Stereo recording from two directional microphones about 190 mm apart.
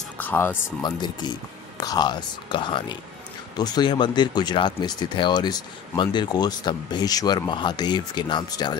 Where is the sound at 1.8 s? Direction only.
20° left (ahead or behind).